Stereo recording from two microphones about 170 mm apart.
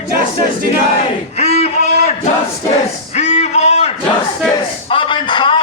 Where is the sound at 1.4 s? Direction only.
40° left (ahead or behind).